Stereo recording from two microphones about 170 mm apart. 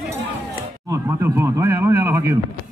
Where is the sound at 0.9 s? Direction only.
15° right (ahead or behind).